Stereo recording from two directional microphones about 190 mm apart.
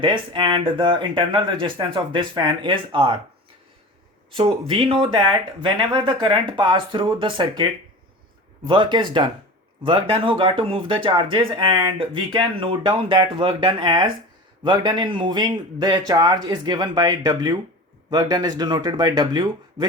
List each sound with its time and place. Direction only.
0.0 s speech: 25° right (ahead or behind)
4.3 s speech: 25° right (ahead or behind)